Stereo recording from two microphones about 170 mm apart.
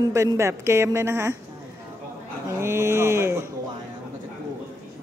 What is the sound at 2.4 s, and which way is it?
A woman's voice, 15° right (ahead or behind).